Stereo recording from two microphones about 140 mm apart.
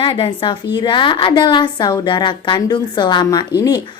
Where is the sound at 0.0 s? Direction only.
40° left (ahead or behind).